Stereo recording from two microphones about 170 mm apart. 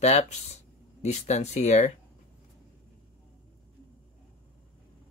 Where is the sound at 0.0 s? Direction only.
40° left (ahead or behind).